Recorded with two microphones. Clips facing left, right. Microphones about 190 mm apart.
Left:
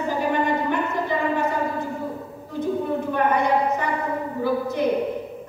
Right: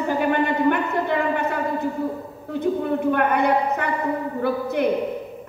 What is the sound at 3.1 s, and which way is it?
Speech, 60° right (ahead or behind).